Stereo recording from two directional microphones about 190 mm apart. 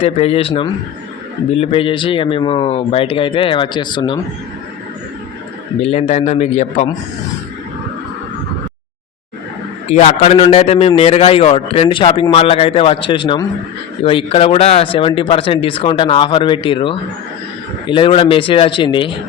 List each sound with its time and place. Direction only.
0.0 s a man's voice: 30° left (ahead or behind)
5.8 s a man's voice: 35° left (ahead or behind)
9.9 s a man's voice: 35° left (ahead or behind)